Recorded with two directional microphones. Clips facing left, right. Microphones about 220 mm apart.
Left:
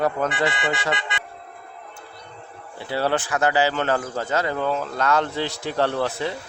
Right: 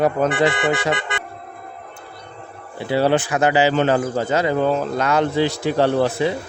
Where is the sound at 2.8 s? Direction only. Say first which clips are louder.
Right 6 dB; 15° right (ahead or behind).